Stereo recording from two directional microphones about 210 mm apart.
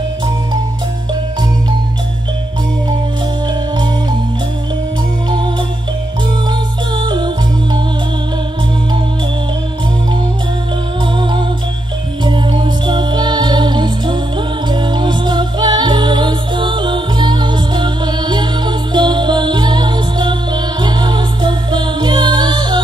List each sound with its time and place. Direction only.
7.0 s music: 20° right (ahead or behind)
12.3 s music: 20° right (ahead or behind)